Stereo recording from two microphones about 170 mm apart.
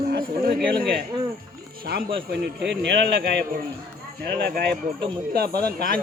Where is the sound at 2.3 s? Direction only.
90° right.